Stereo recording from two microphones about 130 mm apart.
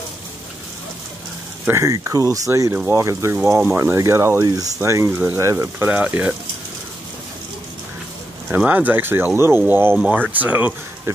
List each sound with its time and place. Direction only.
1.7 s speech: 20° right (ahead or behind)
5.9 s speech: 10° right (ahead or behind)
8.5 s speech: 15° right (ahead or behind)